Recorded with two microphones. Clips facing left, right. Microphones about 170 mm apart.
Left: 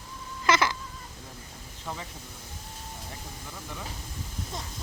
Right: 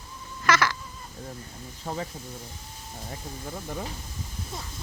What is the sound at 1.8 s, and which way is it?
Speech, 40° right (ahead or behind).